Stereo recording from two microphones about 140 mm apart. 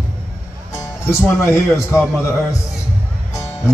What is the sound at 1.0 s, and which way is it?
A man's voice, 20° left (ahead or behind).